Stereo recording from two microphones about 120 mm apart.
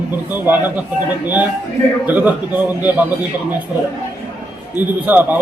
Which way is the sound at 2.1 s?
15° right (ahead or behind).